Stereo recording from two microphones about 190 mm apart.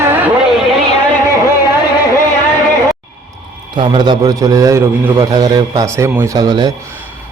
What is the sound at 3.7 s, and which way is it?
A man's voice, 25° right (ahead or behind).